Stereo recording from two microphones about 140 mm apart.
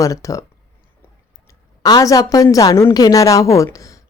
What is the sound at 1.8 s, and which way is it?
A woman's voice, 25° left (ahead or behind).